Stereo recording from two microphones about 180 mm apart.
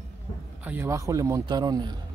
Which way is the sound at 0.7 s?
15° right (ahead or behind).